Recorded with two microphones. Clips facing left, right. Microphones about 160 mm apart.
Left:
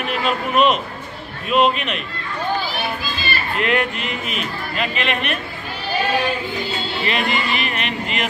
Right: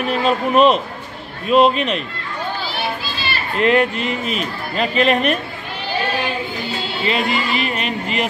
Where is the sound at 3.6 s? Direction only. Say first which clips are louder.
Right 6 dB; 35° right (ahead or behind).